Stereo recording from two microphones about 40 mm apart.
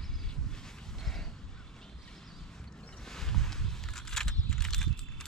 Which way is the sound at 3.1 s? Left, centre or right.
Centre.